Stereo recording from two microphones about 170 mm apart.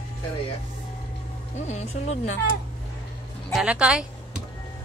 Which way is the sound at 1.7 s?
40° left (ahead or behind).